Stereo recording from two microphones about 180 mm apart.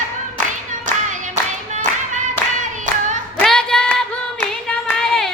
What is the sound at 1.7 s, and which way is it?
Clapping, 45° right (ahead or behind).